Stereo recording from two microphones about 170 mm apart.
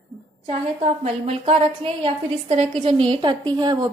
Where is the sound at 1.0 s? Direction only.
35° right (ahead or behind).